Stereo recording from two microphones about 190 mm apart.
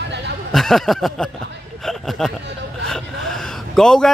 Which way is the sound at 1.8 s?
Centre (ahead or behind).